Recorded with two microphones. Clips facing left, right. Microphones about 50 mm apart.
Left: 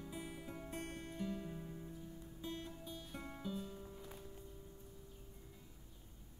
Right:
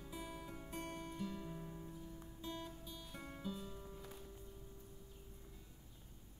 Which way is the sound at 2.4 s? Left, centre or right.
Centre.